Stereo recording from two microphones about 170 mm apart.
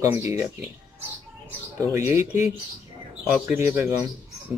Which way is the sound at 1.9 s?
15° right (ahead or behind).